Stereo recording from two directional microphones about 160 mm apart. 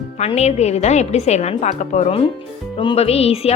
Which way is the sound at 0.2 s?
45° left (ahead or behind).